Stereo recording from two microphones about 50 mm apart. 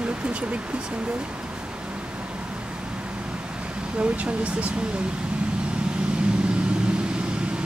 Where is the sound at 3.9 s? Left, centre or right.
Right.